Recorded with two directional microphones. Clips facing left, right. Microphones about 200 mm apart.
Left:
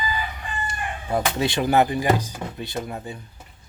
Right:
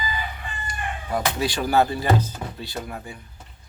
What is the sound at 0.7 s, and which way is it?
Speech, 25° left (ahead or behind).